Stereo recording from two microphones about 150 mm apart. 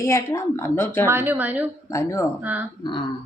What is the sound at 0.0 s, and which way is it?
A woman's voice, 20° left (ahead or behind).